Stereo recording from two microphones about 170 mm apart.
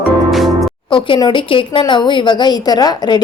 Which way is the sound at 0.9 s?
25° left (ahead or behind).